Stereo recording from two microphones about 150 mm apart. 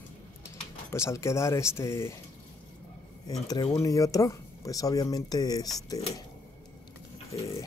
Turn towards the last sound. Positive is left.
turn(degrees=25)  # may be behind; listen again after turning